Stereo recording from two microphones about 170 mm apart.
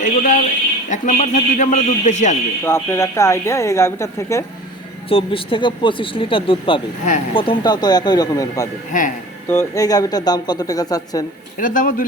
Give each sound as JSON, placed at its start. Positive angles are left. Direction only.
{"t": 0.0, "sound": "a sound", "side_deg": 45}
{"t": 0.9, "sound": "a man's voice", "side_deg": 45}
{"t": 2.6, "sound": "a woman's voice", "side_deg": 15}
{"t": 5.0, "sound": "speech", "side_deg": 35}
{"t": 8.9, "sound": "a man's voice", "side_deg": 50}
{"t": 9.5, "sound": "speech", "side_deg": 20}
{"t": 11.5, "sound": "a man's voice", "side_deg": 50}